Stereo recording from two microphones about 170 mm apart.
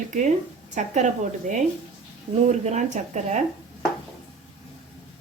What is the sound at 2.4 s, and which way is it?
Speech, 45° right (ahead or behind).